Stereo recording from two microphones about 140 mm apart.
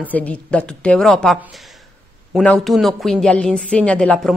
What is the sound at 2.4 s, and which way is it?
A woman's voice, centre (ahead or behind).